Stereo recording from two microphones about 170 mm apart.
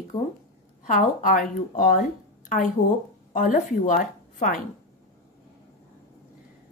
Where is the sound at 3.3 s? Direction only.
50° left (ahead or behind).